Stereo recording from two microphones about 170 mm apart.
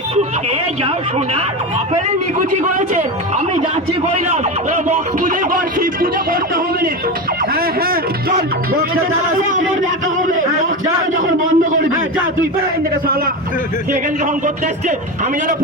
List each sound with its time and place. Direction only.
0.8 s a man's voice: 35° right (ahead or behind)
2.6 s speech: 50° right (ahead or behind)
9.4 s speech: 50° right (ahead or behind)
14.4 s speech: 50° right (ahead or behind)